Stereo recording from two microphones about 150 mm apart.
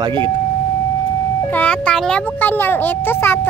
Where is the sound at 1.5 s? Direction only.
10° left (ahead or behind).